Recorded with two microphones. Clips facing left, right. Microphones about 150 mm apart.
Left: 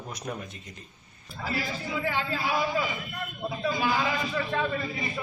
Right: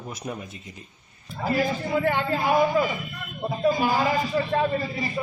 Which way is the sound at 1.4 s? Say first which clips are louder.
Right 8 dB; 50° right (ahead or behind).